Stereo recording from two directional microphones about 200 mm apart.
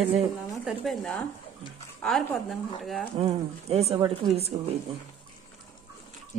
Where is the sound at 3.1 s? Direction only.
30° right (ahead or behind).